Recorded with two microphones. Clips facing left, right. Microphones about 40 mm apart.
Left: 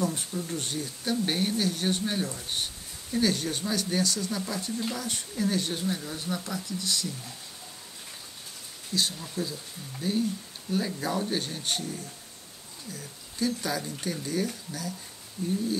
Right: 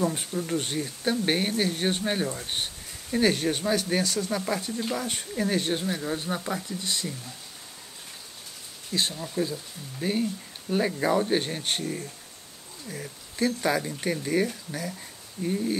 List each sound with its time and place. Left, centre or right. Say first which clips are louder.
0.0 s speech: right 3 dB; right
8.9 s speech: right 2 dB; right
12.9 s speech: right 7 dB; right
15.4 s speech: right 2 dB; right